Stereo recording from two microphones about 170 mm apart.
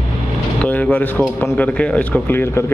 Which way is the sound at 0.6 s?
10° left (ahead or behind).